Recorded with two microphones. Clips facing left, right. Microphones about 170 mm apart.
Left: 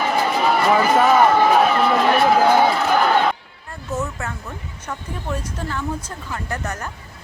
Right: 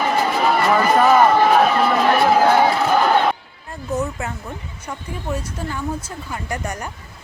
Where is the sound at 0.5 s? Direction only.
5° left (ahead or behind).